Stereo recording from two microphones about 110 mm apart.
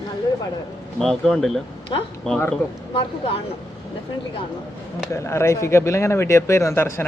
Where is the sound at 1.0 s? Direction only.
5° left (ahead or behind).